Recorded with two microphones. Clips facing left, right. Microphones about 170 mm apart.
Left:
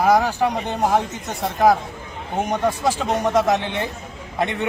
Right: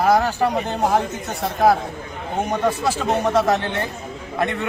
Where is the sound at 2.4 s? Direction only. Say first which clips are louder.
Even; 10° left (ahead or behind).